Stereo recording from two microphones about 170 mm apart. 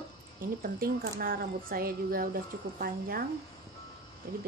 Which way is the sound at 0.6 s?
60° right (ahead or behind).